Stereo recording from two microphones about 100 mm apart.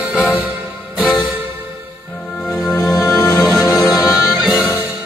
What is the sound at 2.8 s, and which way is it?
Music, 35° left (ahead or behind).